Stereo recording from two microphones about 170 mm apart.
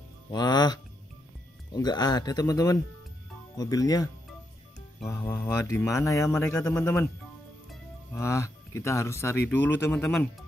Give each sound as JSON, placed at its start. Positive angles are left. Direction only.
{"t": 0.3, "sound": "speech", "side_deg": 25}
{"t": 8.1, "sound": "speech", "side_deg": 15}